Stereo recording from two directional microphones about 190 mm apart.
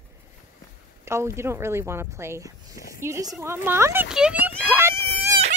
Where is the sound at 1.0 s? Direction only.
15° right (ahead or behind).